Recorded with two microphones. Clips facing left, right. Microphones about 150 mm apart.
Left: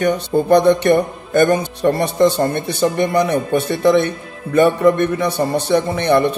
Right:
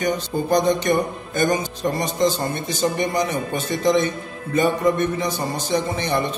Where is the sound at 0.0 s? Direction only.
65° left (ahead or behind).